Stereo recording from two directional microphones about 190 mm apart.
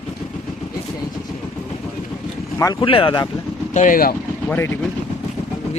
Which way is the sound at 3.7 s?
45° left (ahead or behind).